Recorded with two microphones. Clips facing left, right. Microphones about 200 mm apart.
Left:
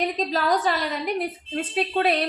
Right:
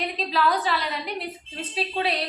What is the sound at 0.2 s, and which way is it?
A woman's voice, 45° left (ahead or behind).